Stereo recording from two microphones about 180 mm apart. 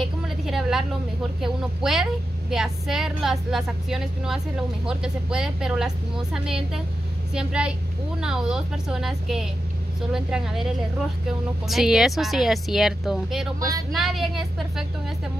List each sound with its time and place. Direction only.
0.5 s a sound: centre (ahead or behind)
1.4 s speech: centre (ahead or behind)
13.6 s speech: 20° right (ahead or behind)
13.9 s speech: centre (ahead or behind)